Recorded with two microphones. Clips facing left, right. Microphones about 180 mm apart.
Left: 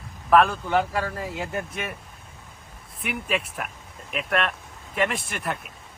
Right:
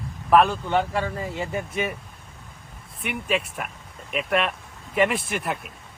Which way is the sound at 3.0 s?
Centre (ahead or behind).